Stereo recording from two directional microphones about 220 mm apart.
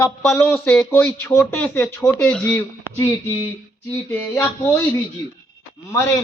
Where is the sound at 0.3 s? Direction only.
5° left (ahead or behind).